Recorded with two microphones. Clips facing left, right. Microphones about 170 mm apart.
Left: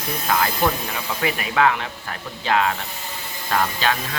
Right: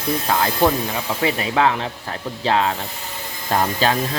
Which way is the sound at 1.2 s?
30° right (ahead or behind).